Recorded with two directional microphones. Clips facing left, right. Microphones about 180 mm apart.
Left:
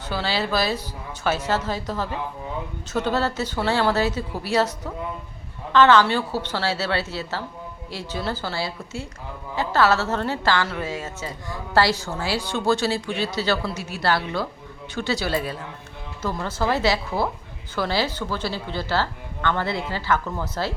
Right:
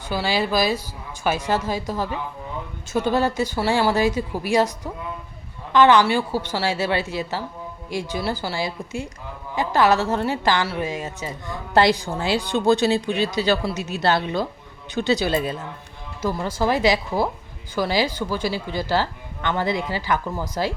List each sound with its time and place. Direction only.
0.1 s a woman's voice: 10° right (ahead or behind)
5.7 s a woman's voice: 15° right (ahead or behind)